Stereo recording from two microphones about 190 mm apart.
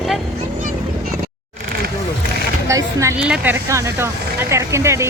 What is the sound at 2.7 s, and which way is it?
Speech, 15° right (ahead or behind).